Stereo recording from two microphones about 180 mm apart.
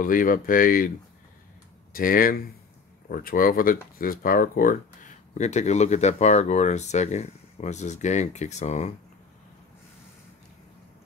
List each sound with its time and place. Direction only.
0.0 s speech: 50° left (ahead or behind)
2.0 s speech: 50° left (ahead or behind)